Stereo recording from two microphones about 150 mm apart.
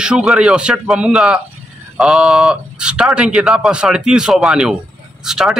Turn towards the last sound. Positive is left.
turn(degrees=-5)  # may be behind; listen again after turning